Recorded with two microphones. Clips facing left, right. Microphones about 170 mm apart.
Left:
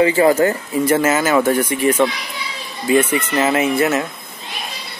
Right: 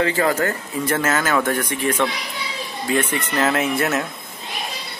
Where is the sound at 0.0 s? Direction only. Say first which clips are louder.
Left 6 dB; 20° left (ahead or behind).